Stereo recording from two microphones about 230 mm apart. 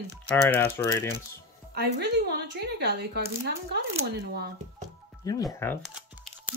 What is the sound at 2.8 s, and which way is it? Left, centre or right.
Speech, right.